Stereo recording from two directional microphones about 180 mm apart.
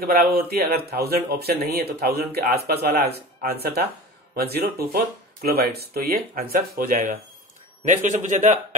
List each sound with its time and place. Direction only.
0.0 s a man's voice: 55° right (ahead or behind)